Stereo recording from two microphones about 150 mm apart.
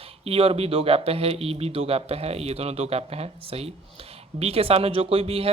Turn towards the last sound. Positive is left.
turn(degrees=-40)  # may be behind; listen again after turning